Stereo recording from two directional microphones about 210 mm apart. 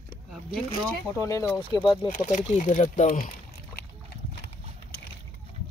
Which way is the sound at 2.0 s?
40° left (ahead or behind).